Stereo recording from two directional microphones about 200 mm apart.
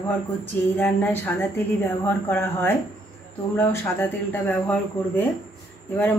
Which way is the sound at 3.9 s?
10° left (ahead or behind).